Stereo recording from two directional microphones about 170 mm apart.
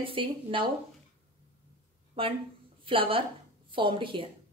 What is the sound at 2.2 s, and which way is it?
Speech, 30° right (ahead or behind).